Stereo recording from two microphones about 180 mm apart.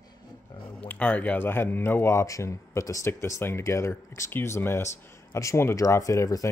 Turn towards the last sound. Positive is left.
turn(degrees=15)  # may be behind; listen again after turning